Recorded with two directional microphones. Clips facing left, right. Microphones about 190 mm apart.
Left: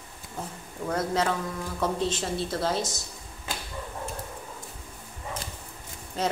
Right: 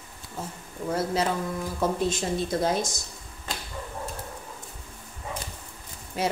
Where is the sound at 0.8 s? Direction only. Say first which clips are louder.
Even; 10° right (ahead or behind).